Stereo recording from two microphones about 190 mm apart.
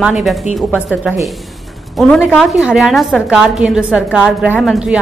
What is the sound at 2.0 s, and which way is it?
A woman's voice, centre (ahead or behind).